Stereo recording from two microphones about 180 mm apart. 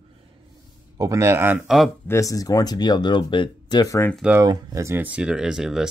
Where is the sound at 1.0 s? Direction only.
15° right (ahead or behind).